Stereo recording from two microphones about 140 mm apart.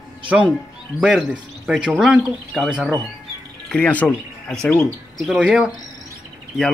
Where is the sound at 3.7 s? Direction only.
10° left (ahead or behind).